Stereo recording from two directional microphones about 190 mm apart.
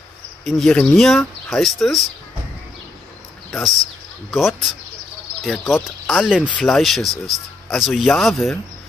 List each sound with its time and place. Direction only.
0.5 s speech: centre (ahead or behind)
3.5 s speech: centre (ahead or behind)